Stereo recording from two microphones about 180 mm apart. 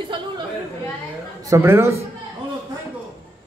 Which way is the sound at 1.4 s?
15° right (ahead or behind).